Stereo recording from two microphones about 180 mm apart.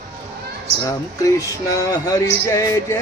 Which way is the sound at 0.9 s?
20° left (ahead or behind).